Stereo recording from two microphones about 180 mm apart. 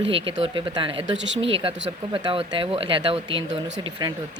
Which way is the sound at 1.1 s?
90° right.